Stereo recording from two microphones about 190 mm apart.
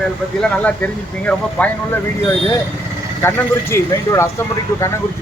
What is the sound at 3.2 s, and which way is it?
Speech, 15° left (ahead or behind).